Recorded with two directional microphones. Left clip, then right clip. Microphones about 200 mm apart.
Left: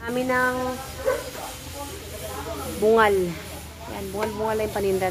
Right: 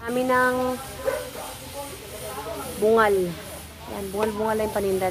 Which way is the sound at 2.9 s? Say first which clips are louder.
Left 1 dB; 10° right (ahead or behind).